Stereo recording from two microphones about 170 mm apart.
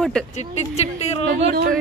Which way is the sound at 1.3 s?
65° right (ahead or behind).